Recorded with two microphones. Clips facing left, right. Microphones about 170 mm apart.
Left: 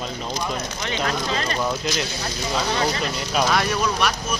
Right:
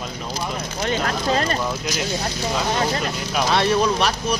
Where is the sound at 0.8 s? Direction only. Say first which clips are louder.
Right 4 dB; 40° right (ahead or behind).